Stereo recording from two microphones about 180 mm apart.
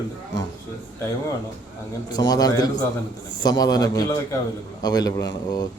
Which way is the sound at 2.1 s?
20° left (ahead or behind).